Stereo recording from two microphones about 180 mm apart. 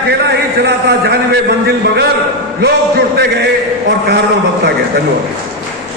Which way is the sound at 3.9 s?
65° right (ahead or behind).